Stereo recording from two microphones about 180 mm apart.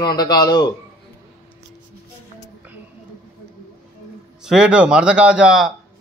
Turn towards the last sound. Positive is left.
turn(degrees=-5)  # may be behind; listen again after turning